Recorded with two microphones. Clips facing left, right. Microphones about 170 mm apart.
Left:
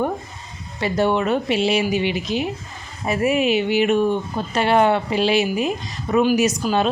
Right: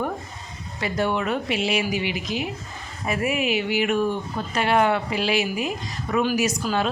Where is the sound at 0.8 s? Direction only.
25° left (ahead or behind).